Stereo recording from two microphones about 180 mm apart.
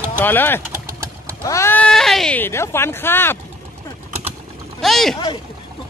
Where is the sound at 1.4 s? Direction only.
15° left (ahead or behind).